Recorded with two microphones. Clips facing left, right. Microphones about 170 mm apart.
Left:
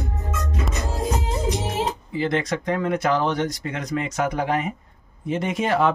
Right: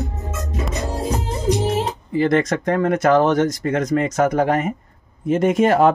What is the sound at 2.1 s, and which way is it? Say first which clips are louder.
Speech: right 7 dB; 50° right (ahead or behind).